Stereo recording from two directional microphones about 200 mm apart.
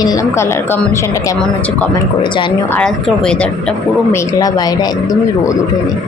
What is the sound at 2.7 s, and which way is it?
A woman's voice, 5° left (ahead or behind).